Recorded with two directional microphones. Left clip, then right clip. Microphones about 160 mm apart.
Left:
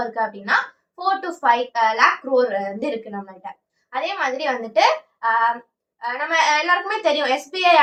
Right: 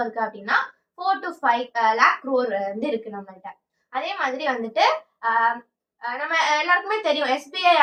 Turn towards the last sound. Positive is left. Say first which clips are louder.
# left 2 dB
turn(degrees=15)  # may be behind; listen again after turning